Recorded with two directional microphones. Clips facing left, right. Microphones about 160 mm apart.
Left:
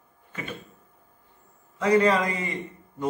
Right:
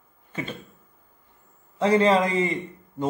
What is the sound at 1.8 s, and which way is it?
Speech, 25° right (ahead or behind).